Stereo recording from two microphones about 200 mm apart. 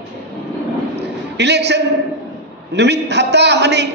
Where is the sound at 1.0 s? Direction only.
55° right (ahead or behind).